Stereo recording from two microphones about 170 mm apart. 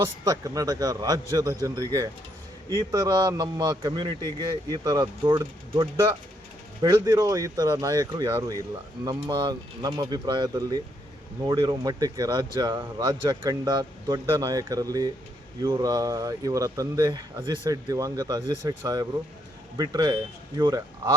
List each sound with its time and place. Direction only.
0.0 s speech: 20° right (ahead or behind)
6.8 s speech: 20° right (ahead or behind)